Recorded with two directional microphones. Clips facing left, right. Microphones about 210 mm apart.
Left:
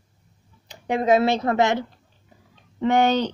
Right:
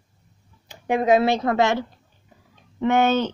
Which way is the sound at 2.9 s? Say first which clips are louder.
Even; 15° left (ahead or behind).